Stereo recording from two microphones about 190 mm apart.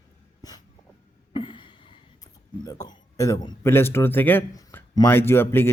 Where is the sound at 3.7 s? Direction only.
10° left (ahead or behind).